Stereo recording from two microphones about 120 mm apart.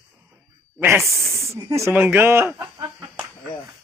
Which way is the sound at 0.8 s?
20° right (ahead or behind).